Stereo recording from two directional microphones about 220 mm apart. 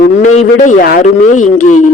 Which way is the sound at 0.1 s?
30° left (ahead or behind).